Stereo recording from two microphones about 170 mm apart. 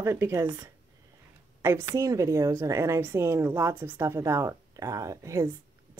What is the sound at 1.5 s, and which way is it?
A woman's voice, 15° right (ahead or behind).